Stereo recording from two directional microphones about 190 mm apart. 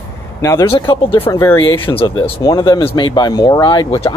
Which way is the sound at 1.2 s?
15° left (ahead or behind).